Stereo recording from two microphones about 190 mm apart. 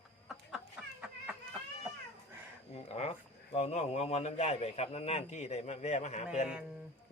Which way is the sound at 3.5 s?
35° left (ahead or behind).